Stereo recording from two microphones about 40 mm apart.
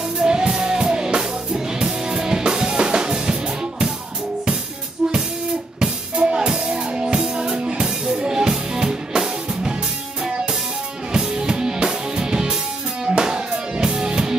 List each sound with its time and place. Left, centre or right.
0.2 s music: centre
1.5 s drum kit: centre
5.8 s music: centre
11.1 s music: centre